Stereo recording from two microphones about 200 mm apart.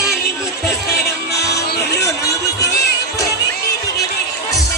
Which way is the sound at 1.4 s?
15° left (ahead or behind).